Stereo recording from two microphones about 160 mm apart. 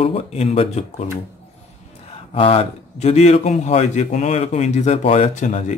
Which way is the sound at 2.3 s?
35° left (ahead or behind).